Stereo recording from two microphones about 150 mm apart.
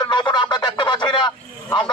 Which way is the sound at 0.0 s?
30° left (ahead or behind).